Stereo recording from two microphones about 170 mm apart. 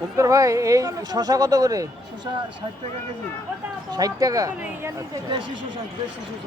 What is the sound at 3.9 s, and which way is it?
Speech, 20° right (ahead or behind).